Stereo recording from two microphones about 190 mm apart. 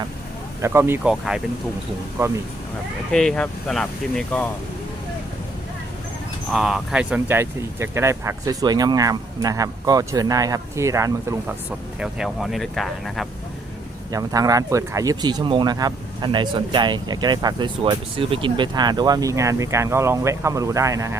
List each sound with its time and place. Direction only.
0.6 s speech: 15° right (ahead or behind)
2.1 s speech: 15° right (ahead or behind)
3.1 s speech: 5° left (ahead or behind)
6.5 s speech: centre (ahead or behind)
11.9 s speech: centre (ahead or behind)
14.1 s speech: 20° right (ahead or behind)